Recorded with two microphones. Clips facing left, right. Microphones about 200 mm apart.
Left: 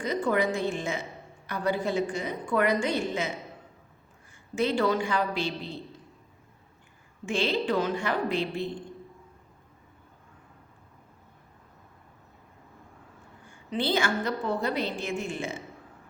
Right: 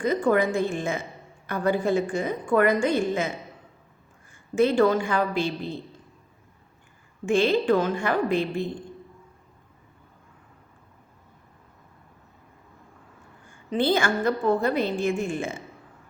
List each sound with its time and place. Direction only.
0.0 s a woman's voice: 50° right (ahead or behind)
4.5 s a woman's voice: 50° right (ahead or behind)
7.3 s a woman's voice: 50° right (ahead or behind)
13.7 s a woman's voice: 50° right (ahead or behind)